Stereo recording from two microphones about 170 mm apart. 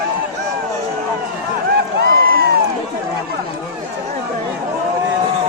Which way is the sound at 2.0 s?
60° right (ahead or behind).